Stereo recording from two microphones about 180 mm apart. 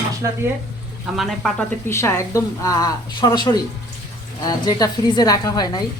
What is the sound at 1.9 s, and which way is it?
Speech, 15° left (ahead or behind).